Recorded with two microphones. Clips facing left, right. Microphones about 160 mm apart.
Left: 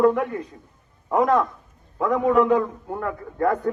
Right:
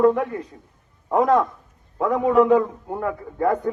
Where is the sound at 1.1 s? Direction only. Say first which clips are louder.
Right 1 dB; centre (ahead or behind).